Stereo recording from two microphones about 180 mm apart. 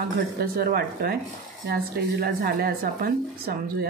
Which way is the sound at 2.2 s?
55° right (ahead or behind).